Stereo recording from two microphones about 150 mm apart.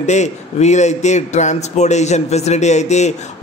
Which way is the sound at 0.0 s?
50° left (ahead or behind).